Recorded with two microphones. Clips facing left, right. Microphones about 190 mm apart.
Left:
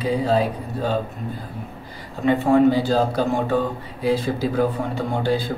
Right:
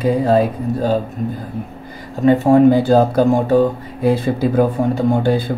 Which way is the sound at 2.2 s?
40° right (ahead or behind).